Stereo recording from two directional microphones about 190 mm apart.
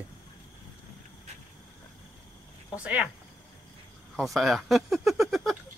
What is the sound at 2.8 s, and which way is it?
Speech, 5° right (ahead or behind).